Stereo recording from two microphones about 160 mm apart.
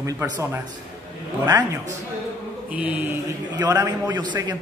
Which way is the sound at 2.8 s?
10° right (ahead or behind).